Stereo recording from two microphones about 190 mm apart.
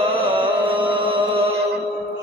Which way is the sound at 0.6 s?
25° right (ahead or behind).